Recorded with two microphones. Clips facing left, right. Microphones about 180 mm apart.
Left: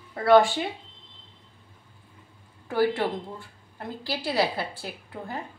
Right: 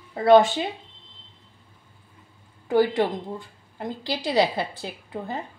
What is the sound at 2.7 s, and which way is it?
A woman's voice, 15° right (ahead or behind).